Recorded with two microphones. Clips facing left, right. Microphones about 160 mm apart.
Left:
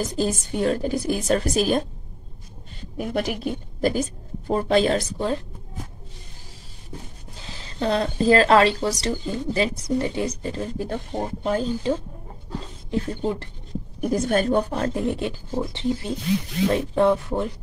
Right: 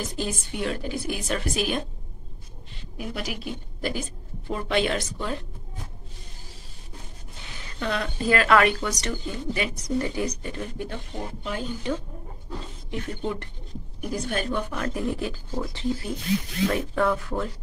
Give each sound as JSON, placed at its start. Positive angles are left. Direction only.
{"t": 0.0, "sound": "a woman's voice", "side_deg": 40}
{"t": 3.0, "sound": "a woman's voice", "side_deg": 50}
{"t": 7.4, "sound": "a woman's voice", "side_deg": 30}
{"t": 12.9, "sound": "a woman's voice", "side_deg": 30}
{"t": 14.0, "sound": "speech", "side_deg": 45}